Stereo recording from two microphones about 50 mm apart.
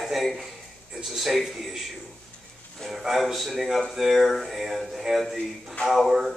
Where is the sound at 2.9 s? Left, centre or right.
Centre.